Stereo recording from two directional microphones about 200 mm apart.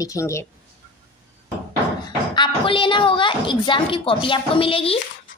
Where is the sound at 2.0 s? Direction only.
25° left (ahead or behind).